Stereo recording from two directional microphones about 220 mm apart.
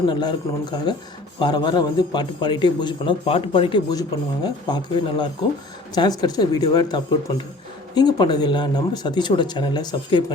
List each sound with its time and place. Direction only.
0.1 s a man's voice: 20° left (ahead or behind)